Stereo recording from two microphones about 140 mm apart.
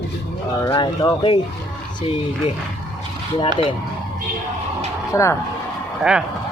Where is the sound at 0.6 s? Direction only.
30° left (ahead or behind).